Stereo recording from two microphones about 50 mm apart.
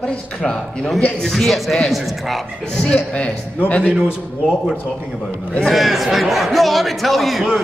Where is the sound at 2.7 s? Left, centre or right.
Centre.